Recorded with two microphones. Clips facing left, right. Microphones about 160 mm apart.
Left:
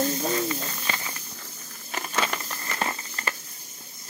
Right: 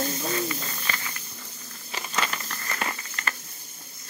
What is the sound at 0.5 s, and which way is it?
Bird, 20° left (ahead or behind).